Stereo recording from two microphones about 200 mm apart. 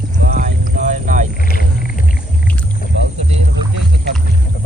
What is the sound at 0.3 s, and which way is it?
Boat, 40° right (ahead or behind).